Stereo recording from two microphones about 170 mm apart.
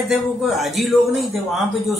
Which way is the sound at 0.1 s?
Centre (ahead or behind).